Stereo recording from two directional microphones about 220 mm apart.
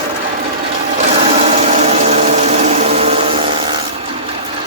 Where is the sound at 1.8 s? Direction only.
30° right (ahead or behind).